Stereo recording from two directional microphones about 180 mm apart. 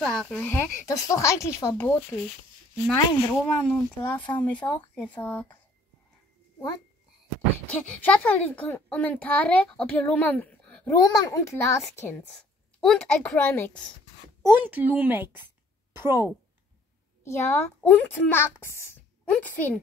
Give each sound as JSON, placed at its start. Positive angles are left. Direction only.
{"t": 0.0, "sound": "a child's voice", "side_deg": 5}
{"t": 7.7, "sound": "a child's voice", "side_deg": 10}
{"t": 11.0, "sound": "a child's voice", "side_deg": 20}
{"t": 14.4, "sound": "a woman's voice", "side_deg": -10}
{"t": 17.2, "sound": "a child's voice", "side_deg": 15}